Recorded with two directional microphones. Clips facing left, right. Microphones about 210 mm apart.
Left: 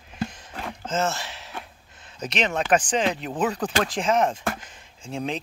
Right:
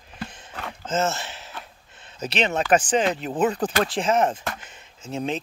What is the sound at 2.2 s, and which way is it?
Speech, 30° right (ahead or behind).